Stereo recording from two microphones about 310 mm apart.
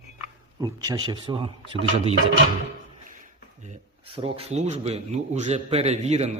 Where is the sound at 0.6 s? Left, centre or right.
Centre.